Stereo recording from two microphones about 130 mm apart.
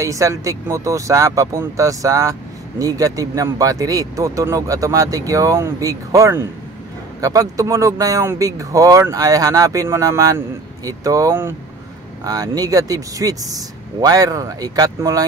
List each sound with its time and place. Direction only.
0.0 s speech: 25° right (ahead or behind)